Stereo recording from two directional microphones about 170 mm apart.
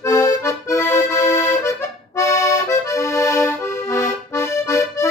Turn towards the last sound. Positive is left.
turn(degrees=15)  # may be behind; listen again after turning